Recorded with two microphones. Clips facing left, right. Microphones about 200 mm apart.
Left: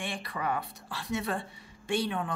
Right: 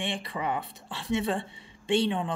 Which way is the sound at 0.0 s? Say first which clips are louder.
Right 3 dB; 25° right (ahead or behind).